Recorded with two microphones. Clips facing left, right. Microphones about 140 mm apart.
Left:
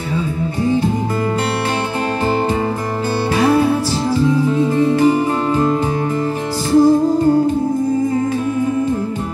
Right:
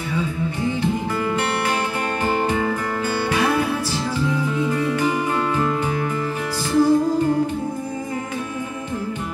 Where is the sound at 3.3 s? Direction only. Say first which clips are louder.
Left 8 dB; 35° left (ahead or behind).